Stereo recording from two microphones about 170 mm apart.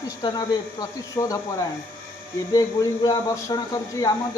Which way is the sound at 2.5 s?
20° left (ahead or behind).